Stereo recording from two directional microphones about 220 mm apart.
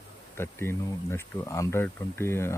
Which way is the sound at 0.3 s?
10° left (ahead or behind).